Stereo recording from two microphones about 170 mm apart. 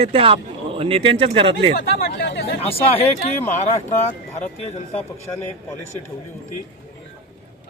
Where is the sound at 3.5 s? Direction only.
45° left (ahead or behind).